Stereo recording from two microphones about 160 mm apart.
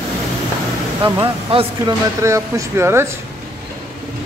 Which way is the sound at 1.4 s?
35° right (ahead or behind).